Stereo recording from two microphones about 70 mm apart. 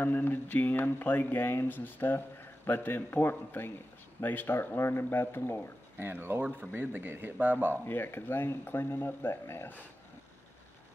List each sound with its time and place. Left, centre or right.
0.0 s speech: left
5.9 s speech: right
7.8 s speech: left